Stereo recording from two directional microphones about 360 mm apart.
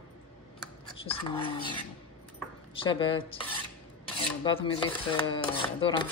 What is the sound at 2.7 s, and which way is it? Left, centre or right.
Speech, centre.